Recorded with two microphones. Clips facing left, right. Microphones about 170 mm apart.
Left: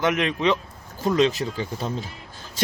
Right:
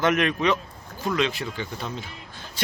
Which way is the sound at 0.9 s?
35° left (ahead or behind).